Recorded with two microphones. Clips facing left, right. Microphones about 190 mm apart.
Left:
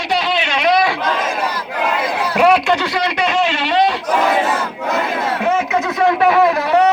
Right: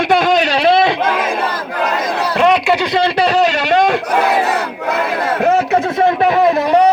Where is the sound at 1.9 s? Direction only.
40° right (ahead or behind).